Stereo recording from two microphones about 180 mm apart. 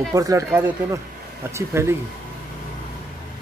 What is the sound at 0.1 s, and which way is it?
Speech, 20° right (ahead or behind).